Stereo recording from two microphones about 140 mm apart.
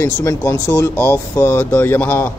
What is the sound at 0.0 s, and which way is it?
Speech, 20° left (ahead or behind).